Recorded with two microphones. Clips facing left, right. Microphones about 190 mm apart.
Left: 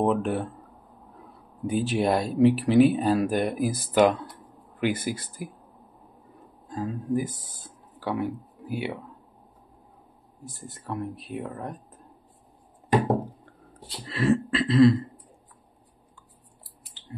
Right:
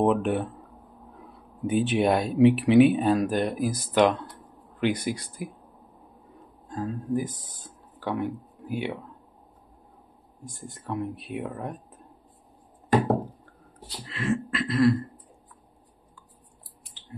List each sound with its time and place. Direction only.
0.0 s speech: centre (ahead or behind)
1.7 s speech: centre (ahead or behind)
6.7 s speech: 5° left (ahead or behind)
10.4 s speech: 5° left (ahead or behind)
14.1 s a sound: 35° left (ahead or behind)